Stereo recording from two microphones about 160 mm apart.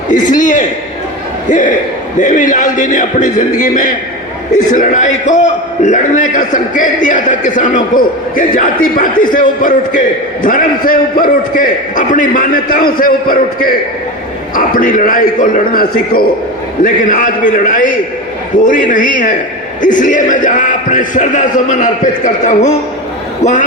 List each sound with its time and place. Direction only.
0.1 s a man's voice: 55° left (ahead or behind)